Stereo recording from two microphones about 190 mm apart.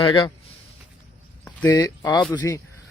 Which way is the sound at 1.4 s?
5° left (ahead or behind).